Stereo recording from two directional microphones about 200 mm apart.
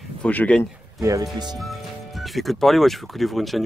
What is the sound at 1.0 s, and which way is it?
Speech, 15° right (ahead or behind).